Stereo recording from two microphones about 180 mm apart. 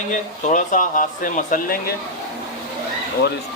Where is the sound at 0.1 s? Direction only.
45° left (ahead or behind).